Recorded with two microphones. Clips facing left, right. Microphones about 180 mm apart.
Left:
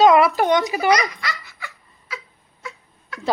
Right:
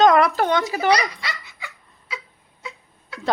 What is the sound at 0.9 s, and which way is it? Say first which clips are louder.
Speech: left 1 dB; 25° right (ahead or behind).